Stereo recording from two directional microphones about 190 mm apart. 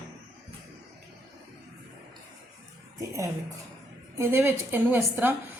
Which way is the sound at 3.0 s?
15° right (ahead or behind).